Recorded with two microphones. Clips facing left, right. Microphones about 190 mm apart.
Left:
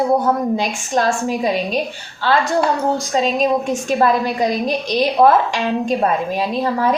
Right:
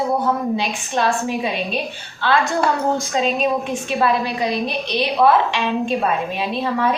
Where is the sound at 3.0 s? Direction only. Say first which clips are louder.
Left 2 dB; 35° left (ahead or behind).